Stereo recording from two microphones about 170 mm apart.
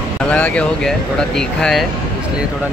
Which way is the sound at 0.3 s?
5° left (ahead or behind).